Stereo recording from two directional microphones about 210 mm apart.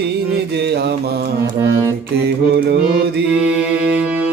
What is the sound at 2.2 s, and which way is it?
Speech, 50° right (ahead or behind).